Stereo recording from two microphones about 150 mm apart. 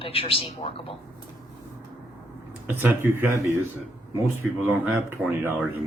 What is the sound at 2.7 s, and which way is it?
Speech, 15° right (ahead or behind).